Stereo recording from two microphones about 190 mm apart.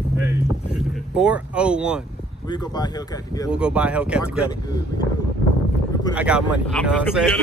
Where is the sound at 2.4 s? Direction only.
20° left (ahead or behind).